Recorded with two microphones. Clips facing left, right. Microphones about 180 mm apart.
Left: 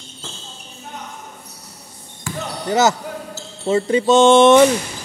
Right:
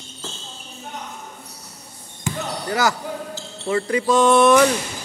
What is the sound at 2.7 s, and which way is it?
Jingle bell, 25° left (ahead or behind).